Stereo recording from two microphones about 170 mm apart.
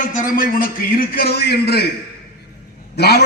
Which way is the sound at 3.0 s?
75° left (ahead or behind).